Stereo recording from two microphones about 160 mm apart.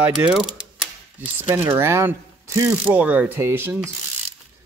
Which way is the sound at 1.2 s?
15° right (ahead or behind).